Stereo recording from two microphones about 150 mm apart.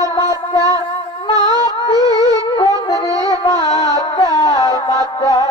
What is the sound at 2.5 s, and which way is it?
Wind instrument, 25° left (ahead or behind).